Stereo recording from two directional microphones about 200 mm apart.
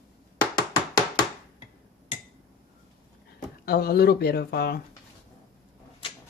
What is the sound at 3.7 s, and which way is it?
Speech, 50° left (ahead or behind).